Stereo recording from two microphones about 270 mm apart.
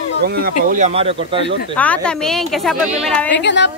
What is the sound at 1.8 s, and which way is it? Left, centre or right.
Speech, centre.